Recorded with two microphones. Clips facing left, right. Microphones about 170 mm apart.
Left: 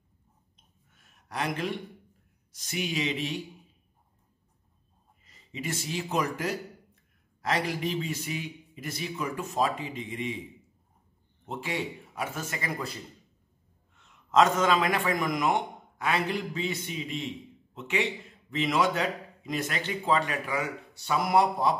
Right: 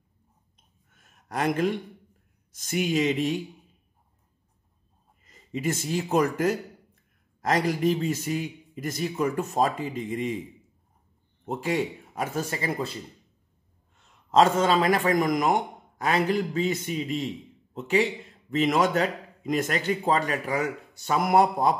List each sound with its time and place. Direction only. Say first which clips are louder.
1.0 s a sound: right 6 dB; 45° right (ahead or behind)
2.5 s a man's voice: right 7 dB; 50° right (ahead or behind)
5.2 s a man's voice: right 8 dB; 45° right (ahead or behind)
11.4 s a man's voice: right 6 dB; 45° right (ahead or behind)